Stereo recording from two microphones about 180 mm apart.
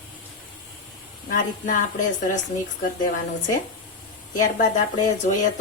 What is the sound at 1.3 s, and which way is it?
Speech, 45° left (ahead or behind).